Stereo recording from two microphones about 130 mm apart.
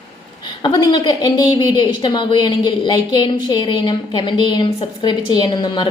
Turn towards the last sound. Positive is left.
turn(degrees=35)  # may be behind; listen again after turning